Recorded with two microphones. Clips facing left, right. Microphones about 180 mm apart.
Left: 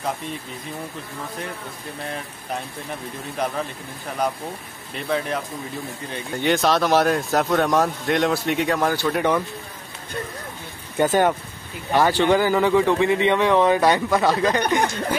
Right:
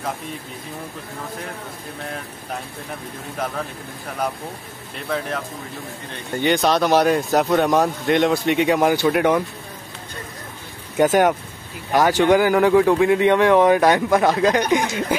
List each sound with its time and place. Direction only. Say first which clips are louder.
4.9 s speech: left 1 dB; 5° left (ahead or behind)
8.6 s speech: right 6 dB; 15° right (ahead or behind)
11.0 s speech: right 3 dB; 10° right (ahead or behind)